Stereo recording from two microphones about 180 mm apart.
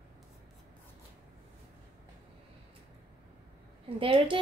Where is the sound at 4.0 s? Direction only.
30° right (ahead or behind).